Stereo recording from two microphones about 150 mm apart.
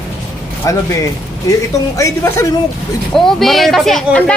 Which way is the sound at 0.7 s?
20° left (ahead or behind).